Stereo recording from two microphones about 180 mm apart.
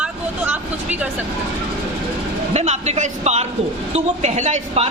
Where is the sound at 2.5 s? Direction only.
40° right (ahead or behind).